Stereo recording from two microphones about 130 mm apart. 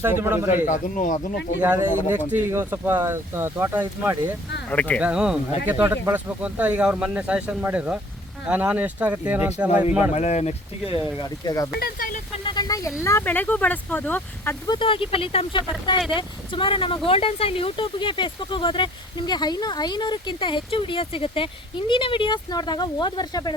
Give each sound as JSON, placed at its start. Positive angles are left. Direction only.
{"t": 0.0, "sound": "speech", "side_deg": -15}
{"t": 0.5, "sound": "speech", "side_deg": 85}
{"t": 1.6, "sound": "speech", "side_deg": -15}
{"t": 4.7, "sound": "speech", "side_deg": 10}
{"t": 4.9, "sound": "speech", "side_deg": -10}
{"t": 10.1, "sound": "speech", "side_deg": 60}
{"t": 11.2, "sound": "speech", "side_deg": 30}
{"t": 11.9, "sound": "speech", "side_deg": 90}
{"t": 12.5, "sound": "speech", "side_deg": 30}
{"t": 14.7, "sound": "speech", "side_deg": 40}